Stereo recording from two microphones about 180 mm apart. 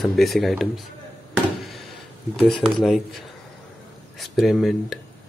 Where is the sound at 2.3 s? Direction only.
Centre (ahead or behind).